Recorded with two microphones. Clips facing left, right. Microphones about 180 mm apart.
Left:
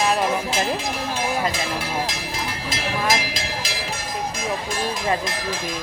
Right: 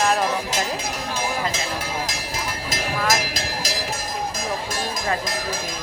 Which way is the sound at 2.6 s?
40° right (ahead or behind).